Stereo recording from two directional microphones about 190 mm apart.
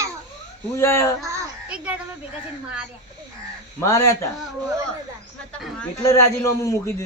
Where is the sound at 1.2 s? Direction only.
5° right (ahead or behind).